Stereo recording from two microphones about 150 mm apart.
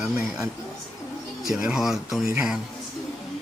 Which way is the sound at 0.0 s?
5° right (ahead or behind).